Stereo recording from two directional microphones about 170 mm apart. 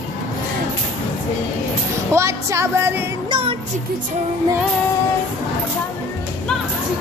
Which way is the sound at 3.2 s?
30° right (ahead or behind).